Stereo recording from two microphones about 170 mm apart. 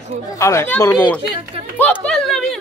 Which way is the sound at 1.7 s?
10° left (ahead or behind).